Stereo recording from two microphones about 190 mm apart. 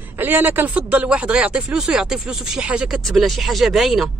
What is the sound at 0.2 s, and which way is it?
Speech, 10° right (ahead or behind).